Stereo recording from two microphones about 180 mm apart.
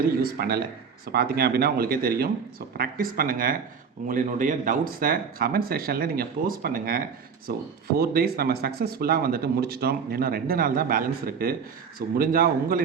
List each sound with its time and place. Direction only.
0.0 s speech: 55° right (ahead or behind)